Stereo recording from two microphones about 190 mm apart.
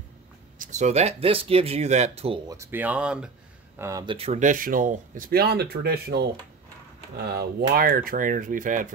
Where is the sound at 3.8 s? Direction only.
15° right (ahead or behind).